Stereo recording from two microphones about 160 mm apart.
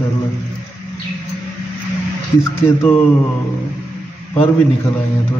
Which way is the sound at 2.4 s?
15° left (ahead or behind).